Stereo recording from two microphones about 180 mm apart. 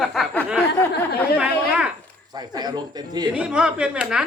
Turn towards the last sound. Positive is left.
turn(degrees=-5)  # may be behind; listen again after turning